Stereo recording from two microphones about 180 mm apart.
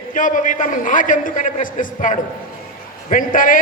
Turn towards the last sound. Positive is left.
turn(degrees=50)  # may be behind; listen again after turning